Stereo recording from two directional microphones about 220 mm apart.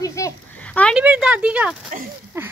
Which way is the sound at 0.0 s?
15° left (ahead or behind).